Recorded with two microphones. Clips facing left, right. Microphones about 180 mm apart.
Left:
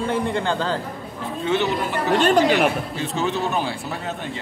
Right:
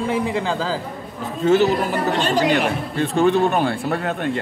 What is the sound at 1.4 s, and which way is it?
Speech, 40° right (ahead or behind).